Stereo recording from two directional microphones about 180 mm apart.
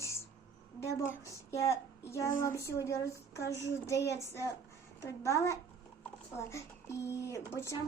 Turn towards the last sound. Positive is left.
turn(degrees=15)  # may be behind; listen again after turning